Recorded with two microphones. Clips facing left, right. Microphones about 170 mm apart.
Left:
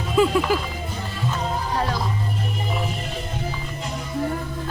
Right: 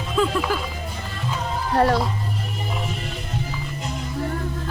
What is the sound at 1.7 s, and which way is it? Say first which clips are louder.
Speech: right 9 dB; 60° right (ahead or behind).